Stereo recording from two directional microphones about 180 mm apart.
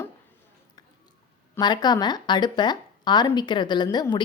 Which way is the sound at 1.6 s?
25° left (ahead or behind).